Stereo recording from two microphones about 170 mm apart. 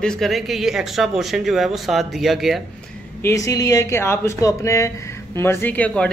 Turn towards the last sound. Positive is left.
turn(degrees=5)  # may be behind; listen again after turning